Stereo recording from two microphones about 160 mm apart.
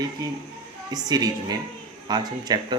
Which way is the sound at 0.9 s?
25° right (ahead or behind).